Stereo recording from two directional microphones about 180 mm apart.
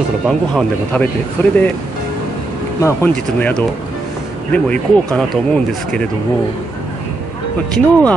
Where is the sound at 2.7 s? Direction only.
15° left (ahead or behind).